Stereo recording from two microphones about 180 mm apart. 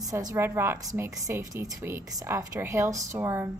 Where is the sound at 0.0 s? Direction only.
20° right (ahead or behind).